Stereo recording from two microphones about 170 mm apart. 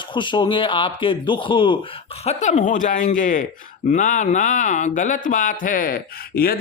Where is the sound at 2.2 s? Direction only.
40° left (ahead or behind); by 6.5 s 60° left (ahead or behind).